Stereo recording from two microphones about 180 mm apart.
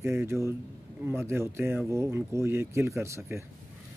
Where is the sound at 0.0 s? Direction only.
15° right (ahead or behind).